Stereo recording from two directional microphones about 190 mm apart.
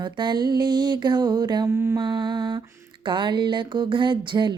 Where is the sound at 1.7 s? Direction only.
10° right (ahead or behind).